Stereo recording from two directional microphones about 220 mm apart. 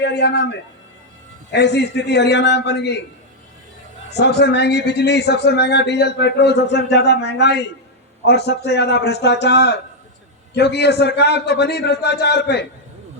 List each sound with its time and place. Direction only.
0.0 s a man's voice: 50° left (ahead or behind)
4.4 s a man's voice: 50° left (ahead or behind)